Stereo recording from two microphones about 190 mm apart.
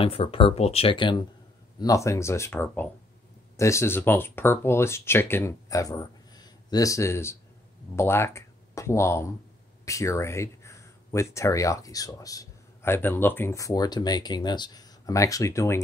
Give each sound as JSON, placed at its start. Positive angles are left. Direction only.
{"t": 0.0, "sound": "speech", "side_deg": 30}